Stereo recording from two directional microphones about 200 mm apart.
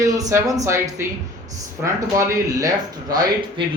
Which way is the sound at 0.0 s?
15° right (ahead or behind).